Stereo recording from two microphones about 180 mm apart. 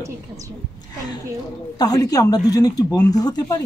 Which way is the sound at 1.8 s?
20° left (ahead or behind).